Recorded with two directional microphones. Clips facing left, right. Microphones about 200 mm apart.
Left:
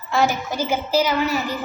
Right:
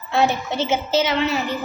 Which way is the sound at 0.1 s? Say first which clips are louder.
Right 1 dB; 60° right (ahead or behind).